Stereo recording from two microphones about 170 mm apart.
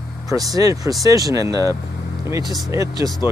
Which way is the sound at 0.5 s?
20° right (ahead or behind).